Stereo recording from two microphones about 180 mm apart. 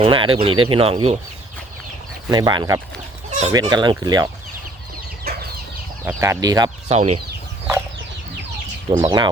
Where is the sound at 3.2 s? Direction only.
40° right (ahead or behind).